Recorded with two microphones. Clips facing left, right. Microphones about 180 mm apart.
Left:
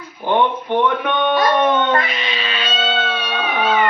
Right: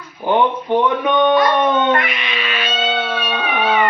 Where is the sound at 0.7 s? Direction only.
15° right (ahead or behind).